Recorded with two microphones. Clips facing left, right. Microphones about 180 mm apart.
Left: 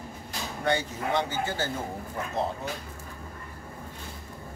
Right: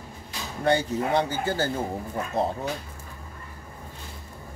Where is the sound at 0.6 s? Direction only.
35° right (ahead or behind).